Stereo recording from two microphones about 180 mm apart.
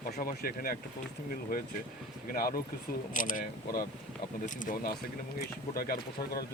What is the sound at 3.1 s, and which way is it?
Speech, 45° left (ahead or behind).